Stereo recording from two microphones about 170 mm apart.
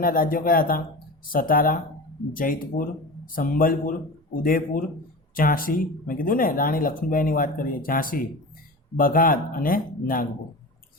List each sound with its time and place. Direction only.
0.0 s speech: 55° left (ahead or behind)